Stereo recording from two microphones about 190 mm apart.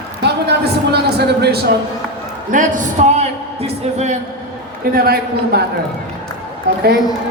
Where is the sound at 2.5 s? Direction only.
40° right (ahead or behind).